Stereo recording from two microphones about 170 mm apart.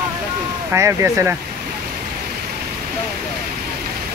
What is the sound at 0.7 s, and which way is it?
Speech, 15° right (ahead or behind).